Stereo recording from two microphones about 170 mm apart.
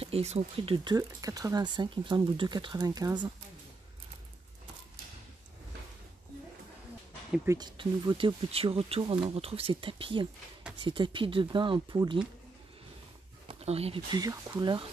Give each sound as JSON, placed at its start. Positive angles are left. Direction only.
{"t": 0.0, "sound": "speech", "side_deg": -35}
{"t": 0.8, "sound": "speech", "side_deg": -20}
{"t": 7.4, "sound": "speech", "side_deg": -25}
{"t": 13.5, "sound": "speech", "side_deg": -35}
{"t": 14.1, "sound": "speech", "side_deg": -25}